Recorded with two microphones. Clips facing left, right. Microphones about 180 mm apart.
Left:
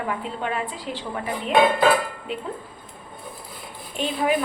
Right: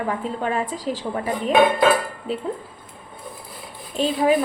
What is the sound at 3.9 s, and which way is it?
Speech, 35° right (ahead or behind).